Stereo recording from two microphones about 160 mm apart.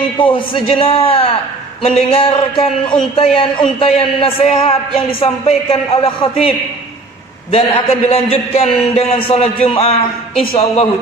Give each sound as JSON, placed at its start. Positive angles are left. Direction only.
{"t": 0.2, "sound": "a man's voice", "side_deg": 30}
{"t": 7.5, "sound": "a man's voice", "side_deg": 40}